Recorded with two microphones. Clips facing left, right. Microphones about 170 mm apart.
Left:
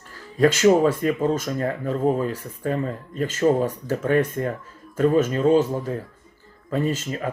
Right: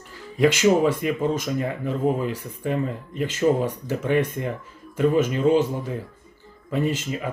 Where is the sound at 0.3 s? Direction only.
15° right (ahead or behind).